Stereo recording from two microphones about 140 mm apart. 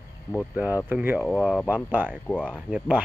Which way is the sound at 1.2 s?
Centre (ahead or behind).